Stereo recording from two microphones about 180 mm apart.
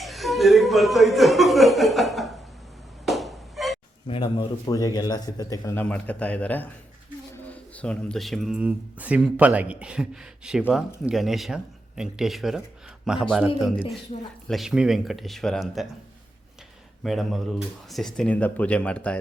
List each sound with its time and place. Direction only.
0.0 s chuckle: centre (ahead or behind)
3.1 s fowl: centre (ahead or behind)
4.0 s a man's voice: 30° left (ahead or behind); by 15.9 s centre (ahead or behind)
17.0 s speech: centre (ahead or behind)